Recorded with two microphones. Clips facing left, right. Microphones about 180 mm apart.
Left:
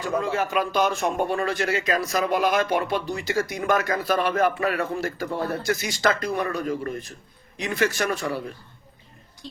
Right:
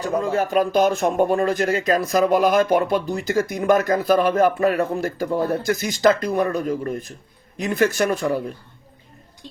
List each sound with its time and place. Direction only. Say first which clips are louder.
0.0 s speech: right 3 dB; 40° right (ahead or behind)